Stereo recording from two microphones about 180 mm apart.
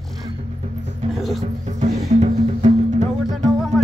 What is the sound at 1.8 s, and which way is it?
Music, 40° right (ahead or behind).